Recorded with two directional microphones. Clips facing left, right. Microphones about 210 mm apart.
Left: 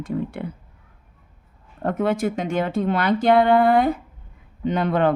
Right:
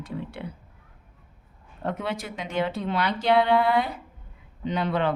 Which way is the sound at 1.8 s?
50° left (ahead or behind).